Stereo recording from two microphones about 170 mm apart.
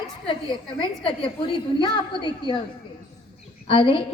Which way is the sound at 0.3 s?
30° left (ahead or behind).